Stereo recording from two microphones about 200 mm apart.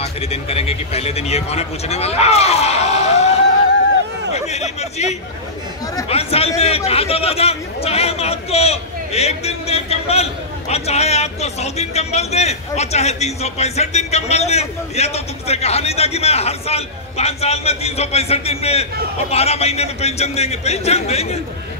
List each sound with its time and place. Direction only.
0.0 s a man's voice: 30° left (ahead or behind)
4.5 s a man's voice: 35° left (ahead or behind)